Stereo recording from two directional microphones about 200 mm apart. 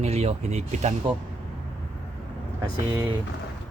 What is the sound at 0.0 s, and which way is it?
Speech, 30° right (ahead or behind).